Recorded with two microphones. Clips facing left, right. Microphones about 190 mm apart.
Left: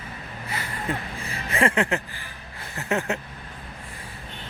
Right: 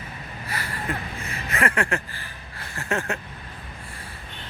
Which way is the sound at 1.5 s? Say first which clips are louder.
Left 2 dB; 25° left (ahead or behind).